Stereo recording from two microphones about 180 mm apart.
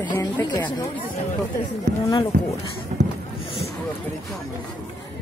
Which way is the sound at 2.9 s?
45° right (ahead or behind).